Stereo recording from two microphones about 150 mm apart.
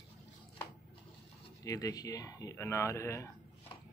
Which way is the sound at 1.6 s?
25° left (ahead or behind).